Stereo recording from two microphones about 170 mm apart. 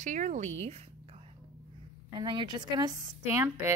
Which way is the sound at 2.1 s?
25° right (ahead or behind).